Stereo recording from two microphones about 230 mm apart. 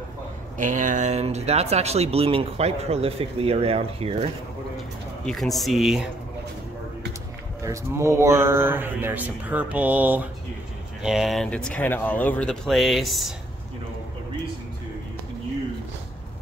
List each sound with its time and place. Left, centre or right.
0.6 s speech: right
5.2 s speech: centre
7.6 s speech: centre